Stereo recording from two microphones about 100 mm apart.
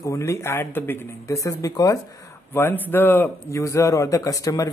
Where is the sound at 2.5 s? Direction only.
20° left (ahead or behind).